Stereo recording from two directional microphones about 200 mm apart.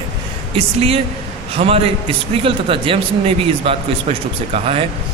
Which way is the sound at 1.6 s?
30° right (ahead or behind).